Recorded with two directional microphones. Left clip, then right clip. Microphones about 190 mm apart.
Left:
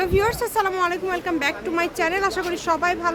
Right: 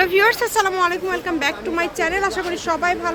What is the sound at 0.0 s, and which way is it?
Speech, centre (ahead or behind).